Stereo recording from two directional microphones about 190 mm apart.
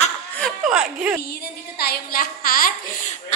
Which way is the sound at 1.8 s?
50° left (ahead or behind).